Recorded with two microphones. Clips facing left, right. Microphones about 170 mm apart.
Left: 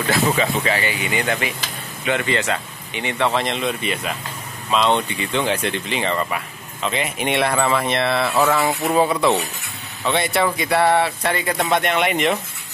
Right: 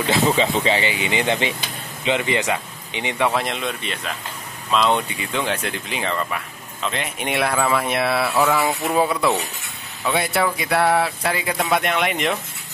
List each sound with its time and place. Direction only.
0.4 s speech: 25° right (ahead or behind); by 12.4 s centre (ahead or behind)